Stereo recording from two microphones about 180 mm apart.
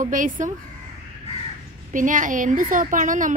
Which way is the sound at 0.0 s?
45° right (ahead or behind).